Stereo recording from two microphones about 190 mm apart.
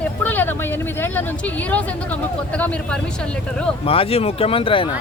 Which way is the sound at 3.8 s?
30° left (ahead or behind).